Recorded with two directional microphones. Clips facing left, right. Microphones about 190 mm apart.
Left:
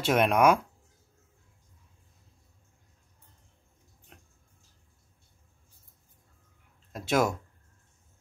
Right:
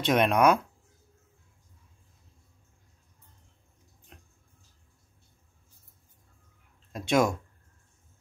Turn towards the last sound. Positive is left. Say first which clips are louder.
# right 2 dB
turn(degrees=5)  # may be behind; listen again after turning